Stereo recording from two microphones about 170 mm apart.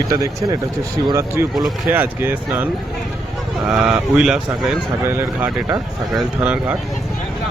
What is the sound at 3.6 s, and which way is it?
Speech, 5° right (ahead or behind).